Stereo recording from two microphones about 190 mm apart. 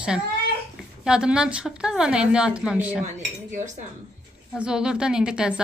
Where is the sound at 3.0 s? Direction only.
40° right (ahead or behind).